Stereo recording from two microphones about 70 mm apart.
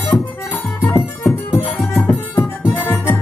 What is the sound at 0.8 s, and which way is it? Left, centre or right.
Music, left.